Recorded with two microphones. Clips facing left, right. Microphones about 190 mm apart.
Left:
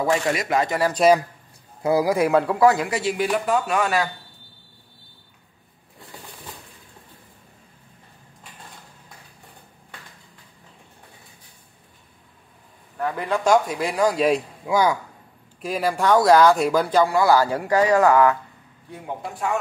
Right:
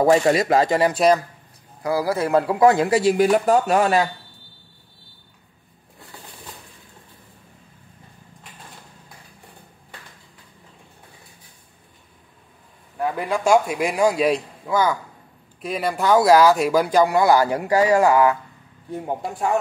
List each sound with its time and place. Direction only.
0.0 s speech: 35° right (ahead or behind)
1.8 s a man's voice: 20° left (ahead or behind)
2.5 s speech: 25° right (ahead or behind)
13.0 s speech: 10° right (ahead or behind)
14.7 s a man's voice: 15° left (ahead or behind)
15.6 s speech: centre (ahead or behind)